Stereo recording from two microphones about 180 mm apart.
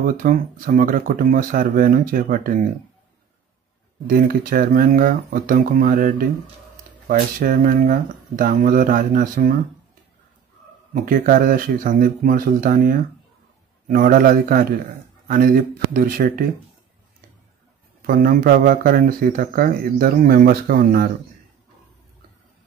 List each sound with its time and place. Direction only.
0.0 s speech: 50° right (ahead or behind)
4.1 s speech: 55° right (ahead or behind)
10.9 s speech: 50° right (ahead or behind)
18.0 s speech: 55° right (ahead or behind)